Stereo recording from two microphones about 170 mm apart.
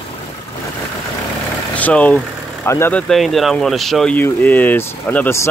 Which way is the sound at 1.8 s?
10° left (ahead or behind).